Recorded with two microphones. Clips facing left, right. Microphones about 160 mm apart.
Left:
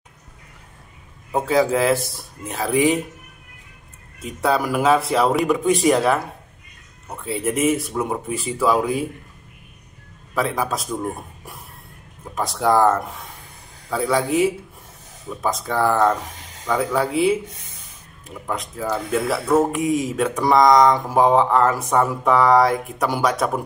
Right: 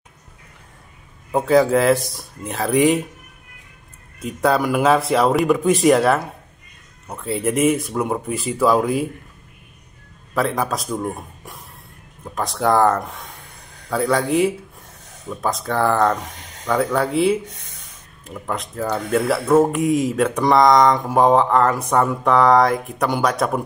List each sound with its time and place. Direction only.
1.3 s speech: centre (ahead or behind)
4.2 s speech: centre (ahead or behind)
7.2 s speech: centre (ahead or behind)
10.3 s speech: 5° left (ahead or behind)
12.4 s speech: centre (ahead or behind)
18.5 s speech: centre (ahead or behind)